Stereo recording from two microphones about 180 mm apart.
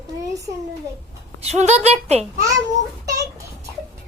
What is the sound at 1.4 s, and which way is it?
Speech, 40° right (ahead or behind).